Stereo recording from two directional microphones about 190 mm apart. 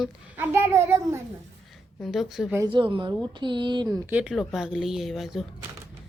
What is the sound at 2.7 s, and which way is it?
Speech, 25° right (ahead or behind).